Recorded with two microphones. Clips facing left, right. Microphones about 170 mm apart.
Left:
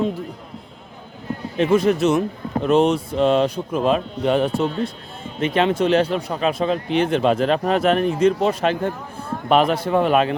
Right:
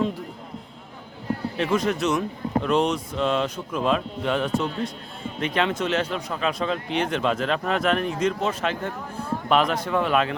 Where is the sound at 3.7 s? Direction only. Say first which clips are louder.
Left 4 dB; 45° left (ahead or behind).